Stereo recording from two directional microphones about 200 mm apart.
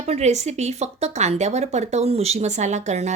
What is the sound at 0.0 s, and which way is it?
A woman's voice, 35° right (ahead or behind).